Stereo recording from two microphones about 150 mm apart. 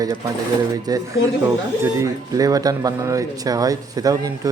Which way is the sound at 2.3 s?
25° right (ahead or behind).